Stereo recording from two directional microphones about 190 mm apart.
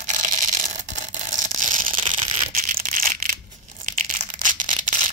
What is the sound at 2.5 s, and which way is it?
Crushing, 45° right (ahead or behind).